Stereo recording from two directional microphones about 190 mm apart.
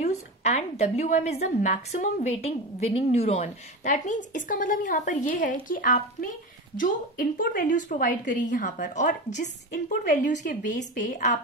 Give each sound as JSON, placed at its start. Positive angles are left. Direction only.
{"t": 0.0, "sound": "a woman's voice", "side_deg": 35}